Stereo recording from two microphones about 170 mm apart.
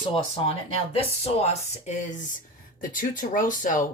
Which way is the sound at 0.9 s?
40° left (ahead or behind).